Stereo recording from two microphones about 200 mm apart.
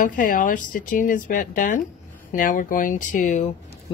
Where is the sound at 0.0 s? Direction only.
40° left (ahead or behind).